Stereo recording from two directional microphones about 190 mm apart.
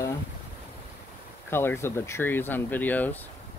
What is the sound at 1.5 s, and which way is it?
Speech, 10° left (ahead or behind).